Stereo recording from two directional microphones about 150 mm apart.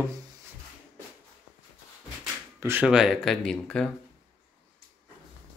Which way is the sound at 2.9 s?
Centre (ahead or behind).